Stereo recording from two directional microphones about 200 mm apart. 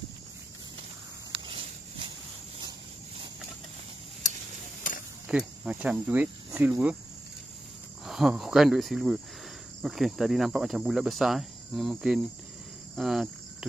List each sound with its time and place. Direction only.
1.4 s a sound: 25° right (ahead or behind)
5.3 s speech: 5° right (ahead or behind)
8.0 s speech: centre (ahead or behind)
12.9 s cricket: centre (ahead or behind)